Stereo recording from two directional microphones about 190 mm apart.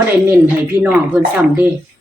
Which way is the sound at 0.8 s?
10° right (ahead or behind).